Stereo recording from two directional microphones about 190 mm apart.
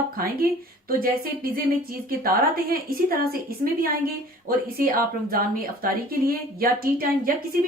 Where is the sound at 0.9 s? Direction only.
50° right (ahead or behind).